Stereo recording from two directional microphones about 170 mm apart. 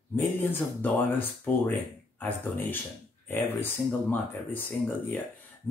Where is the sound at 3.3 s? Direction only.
10° left (ahead or behind).